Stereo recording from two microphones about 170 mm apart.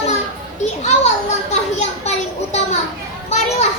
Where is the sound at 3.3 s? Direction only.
40° left (ahead or behind).